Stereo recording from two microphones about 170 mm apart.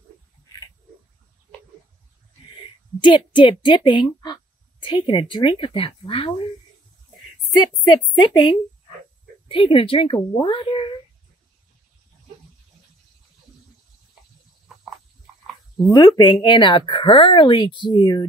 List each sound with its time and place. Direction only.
3.0 s a woman's voice: 25° left (ahead or behind)
7.6 s a woman's voice: 25° left (ahead or behind)
15.9 s a woman's voice: 25° left (ahead or behind)